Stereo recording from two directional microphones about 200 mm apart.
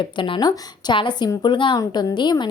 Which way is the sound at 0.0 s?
25° left (ahead or behind).